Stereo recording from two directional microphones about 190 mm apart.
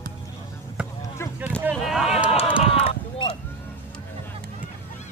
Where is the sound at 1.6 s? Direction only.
5° right (ahead or behind).